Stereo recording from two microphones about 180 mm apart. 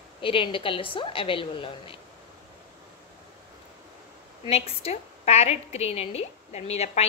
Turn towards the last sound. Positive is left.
turn(degrees=35)  # may be behind; listen again after turning